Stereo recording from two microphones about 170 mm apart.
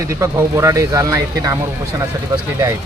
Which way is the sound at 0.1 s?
15° right (ahead or behind).